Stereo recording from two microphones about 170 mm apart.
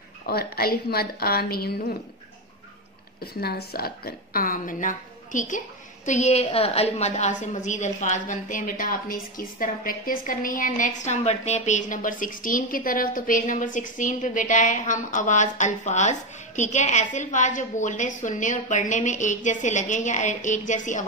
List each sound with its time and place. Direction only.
0.3 s a woman's voice: 65° left (ahead or behind)
3.3 s a woman's voice: 65° left (ahead or behind); by 21.0 s 45° left (ahead or behind)